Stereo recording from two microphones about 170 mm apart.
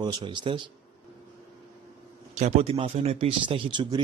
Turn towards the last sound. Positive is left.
turn(degrees=-25)  # may be behind; listen again after turning